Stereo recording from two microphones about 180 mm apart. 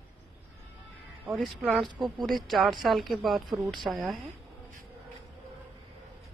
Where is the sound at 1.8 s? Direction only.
25° right (ahead or behind).